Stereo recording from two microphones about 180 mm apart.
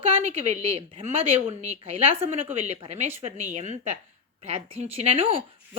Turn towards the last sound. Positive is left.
turn(degrees=-30)  # may be behind; listen again after turning